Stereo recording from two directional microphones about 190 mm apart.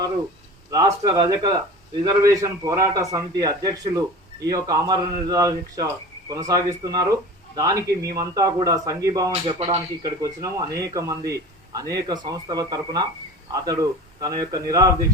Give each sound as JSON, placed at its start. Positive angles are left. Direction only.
{"t": 0.7, "sound": "a man's voice", "side_deg": -20}
{"t": 9.3, "sound": "speech", "side_deg": -30}
{"t": 14.2, "sound": "speech", "side_deg": -20}